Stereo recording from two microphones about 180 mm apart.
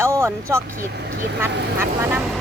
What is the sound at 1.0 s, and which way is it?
Speech, 65° right (ahead or behind).